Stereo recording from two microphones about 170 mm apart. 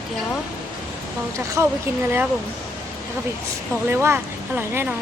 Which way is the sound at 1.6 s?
15° right (ahead or behind).